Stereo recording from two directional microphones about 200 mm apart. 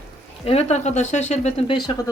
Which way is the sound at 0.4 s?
30° left (ahead or behind).